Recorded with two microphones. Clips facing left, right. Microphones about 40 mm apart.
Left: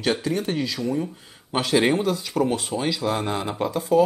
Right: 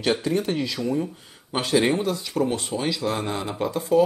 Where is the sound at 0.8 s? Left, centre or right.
Centre.